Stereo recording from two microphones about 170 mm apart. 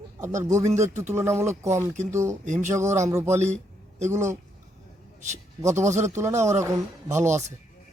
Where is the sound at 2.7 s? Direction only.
15° right (ahead or behind).